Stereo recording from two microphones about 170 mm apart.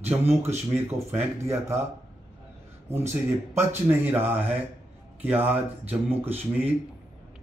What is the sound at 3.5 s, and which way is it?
Speech, 10° right (ahead or behind).